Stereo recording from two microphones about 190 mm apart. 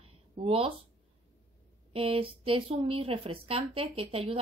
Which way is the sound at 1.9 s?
30° right (ahead or behind).